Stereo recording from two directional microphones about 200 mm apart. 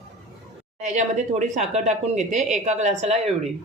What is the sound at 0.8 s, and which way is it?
Speech, 35° right (ahead or behind).